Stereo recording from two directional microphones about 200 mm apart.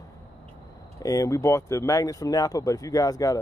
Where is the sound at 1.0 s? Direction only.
15° left (ahead or behind).